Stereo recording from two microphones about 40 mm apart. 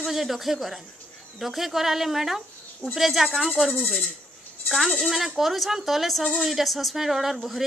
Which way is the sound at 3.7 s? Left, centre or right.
Left.